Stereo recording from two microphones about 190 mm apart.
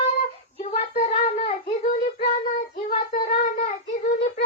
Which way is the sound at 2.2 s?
45° left (ahead or behind).